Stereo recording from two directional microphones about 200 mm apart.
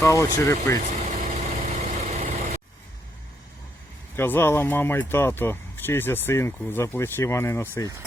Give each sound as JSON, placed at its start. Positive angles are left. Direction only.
{"t": 0.0, "sound": "speech", "side_deg": 15}
{"t": 0.9, "sound": "vehicle", "side_deg": -35}
{"t": 4.1, "sound": "speech", "side_deg": 10}